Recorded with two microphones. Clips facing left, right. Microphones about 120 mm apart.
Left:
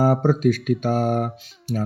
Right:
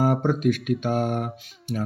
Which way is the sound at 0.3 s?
40° left (ahead or behind).